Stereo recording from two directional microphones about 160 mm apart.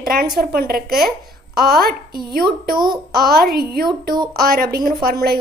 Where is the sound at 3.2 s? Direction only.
70° right (ahead or behind).